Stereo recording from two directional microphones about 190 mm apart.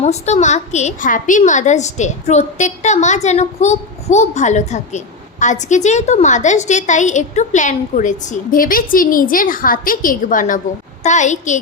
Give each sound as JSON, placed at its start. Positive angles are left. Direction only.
{"t": 0.0, "sound": "a woman's voice", "side_deg": 35}